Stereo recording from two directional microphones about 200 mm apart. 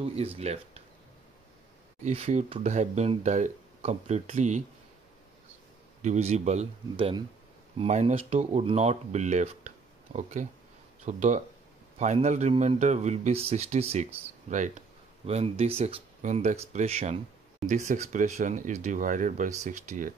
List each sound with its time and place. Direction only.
0.0 s speech: 30° right (ahead or behind)
2.0 s speech: 35° right (ahead or behind)
6.0 s speech: 35° right (ahead or behind)